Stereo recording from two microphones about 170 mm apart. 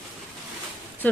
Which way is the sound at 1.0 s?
10° left (ahead or behind).